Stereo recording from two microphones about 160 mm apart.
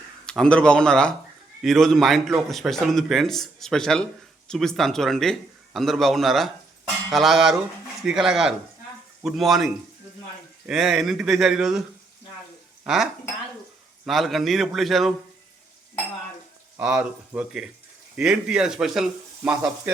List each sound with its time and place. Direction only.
0.3 s speech: 5° left (ahead or behind)
12.8 s speech: 5° right (ahead or behind)
16.7 s speech: 5° right (ahead or behind)